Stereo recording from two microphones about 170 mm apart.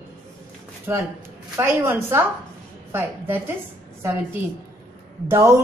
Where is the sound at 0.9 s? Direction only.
15° right (ahead or behind).